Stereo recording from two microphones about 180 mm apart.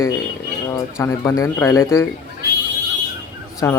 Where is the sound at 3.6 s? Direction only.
15° left (ahead or behind).